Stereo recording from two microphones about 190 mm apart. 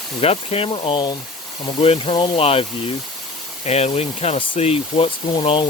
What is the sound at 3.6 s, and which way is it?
Speech, 35° left (ahead or behind).